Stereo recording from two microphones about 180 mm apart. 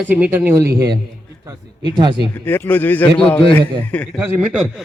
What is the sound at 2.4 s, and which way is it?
A man's voice, 10° left (ahead or behind).